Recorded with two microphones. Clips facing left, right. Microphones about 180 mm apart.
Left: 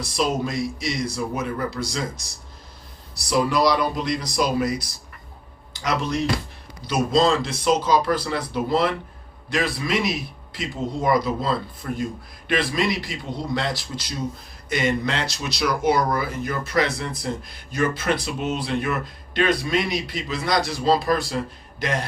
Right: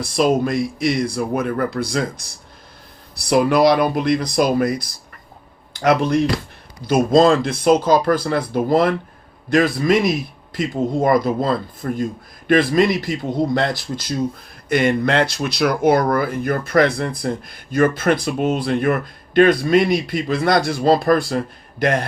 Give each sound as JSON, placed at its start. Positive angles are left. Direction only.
{"t": 0.0, "sound": "a man's voice", "side_deg": -55}